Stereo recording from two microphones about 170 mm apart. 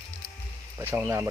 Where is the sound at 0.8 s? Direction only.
15° right (ahead or behind).